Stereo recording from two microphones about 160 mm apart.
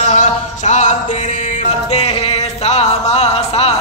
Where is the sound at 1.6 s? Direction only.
40° left (ahead or behind).